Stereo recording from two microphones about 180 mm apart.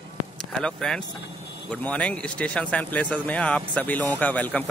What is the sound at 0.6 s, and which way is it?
Speech, 5° left (ahead or behind).